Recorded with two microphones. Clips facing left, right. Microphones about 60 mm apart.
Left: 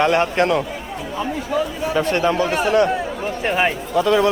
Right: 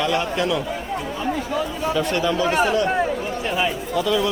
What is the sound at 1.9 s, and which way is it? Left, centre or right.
Speech, left.